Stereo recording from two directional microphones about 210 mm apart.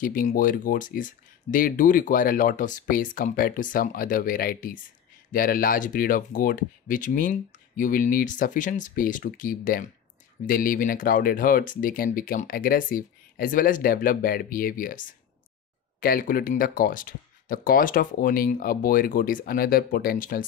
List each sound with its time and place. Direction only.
0.0 s speech: 40° left (ahead or behind)